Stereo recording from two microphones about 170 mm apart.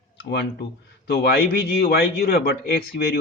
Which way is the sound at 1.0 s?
65° left (ahead or behind).